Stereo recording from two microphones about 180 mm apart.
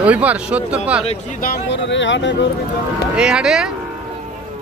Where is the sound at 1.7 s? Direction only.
90° left.